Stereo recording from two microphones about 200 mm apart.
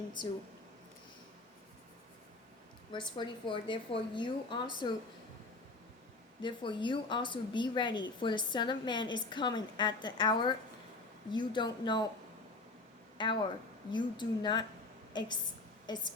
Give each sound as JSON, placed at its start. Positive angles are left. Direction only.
{"t": 2.9, "sound": "a woman's voice", "side_deg": 25}
{"t": 6.4, "sound": "a woman's voice", "side_deg": 25}
{"t": 13.2, "sound": "a woman's voice", "side_deg": 20}